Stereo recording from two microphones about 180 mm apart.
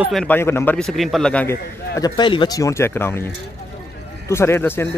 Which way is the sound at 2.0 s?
25° left (ahead or behind).